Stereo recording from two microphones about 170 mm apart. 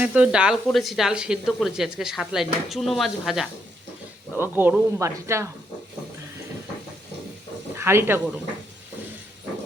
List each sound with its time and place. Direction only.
0.0 s speech: 5° right (ahead or behind)
4.4 s speech: 10° right (ahead or behind)
7.8 s speech: 15° right (ahead or behind)